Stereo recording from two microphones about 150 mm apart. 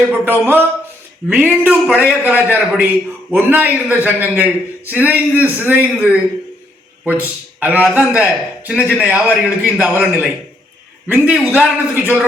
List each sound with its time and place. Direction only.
0.1 s a man's voice: 10° right (ahead or behind)